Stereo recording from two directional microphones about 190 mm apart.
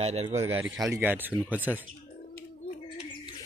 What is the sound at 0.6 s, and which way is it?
Speech, 15° right (ahead or behind).